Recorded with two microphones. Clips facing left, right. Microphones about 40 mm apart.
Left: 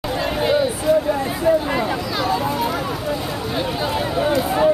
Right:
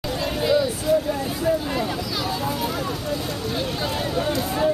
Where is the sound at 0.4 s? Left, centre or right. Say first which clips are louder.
Left 2 dB; left.